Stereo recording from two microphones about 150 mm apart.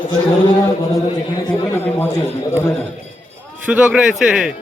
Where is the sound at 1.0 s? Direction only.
30° left (ahead or behind).